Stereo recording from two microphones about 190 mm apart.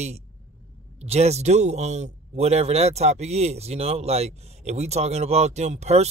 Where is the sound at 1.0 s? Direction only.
35° right (ahead or behind).